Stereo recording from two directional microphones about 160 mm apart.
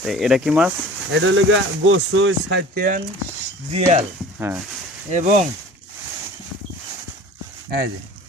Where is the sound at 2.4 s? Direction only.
80° right.